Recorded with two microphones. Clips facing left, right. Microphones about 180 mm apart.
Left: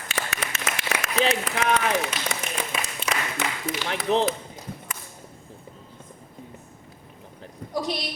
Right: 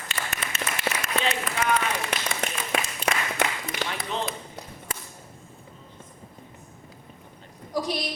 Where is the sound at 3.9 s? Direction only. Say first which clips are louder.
Left 12 dB; 75° left (ahead or behind).